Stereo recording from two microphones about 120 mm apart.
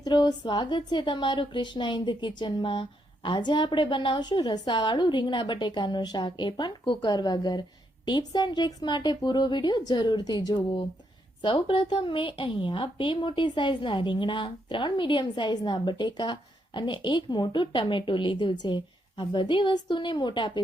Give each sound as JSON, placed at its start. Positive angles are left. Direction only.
{"t": 0.0, "sound": "a woman's voice", "side_deg": 40}